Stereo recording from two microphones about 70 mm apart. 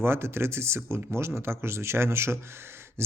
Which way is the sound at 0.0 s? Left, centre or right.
Right.